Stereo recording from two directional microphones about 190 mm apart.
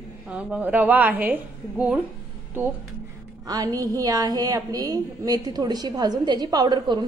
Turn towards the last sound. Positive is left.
turn(degrees=-25)  # may be behind; listen again after turning